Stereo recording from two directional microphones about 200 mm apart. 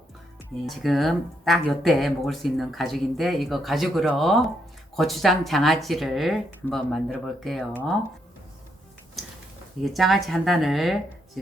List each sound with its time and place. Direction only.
0.6 s speech: centre (ahead or behind)
9.8 s speech: centre (ahead or behind)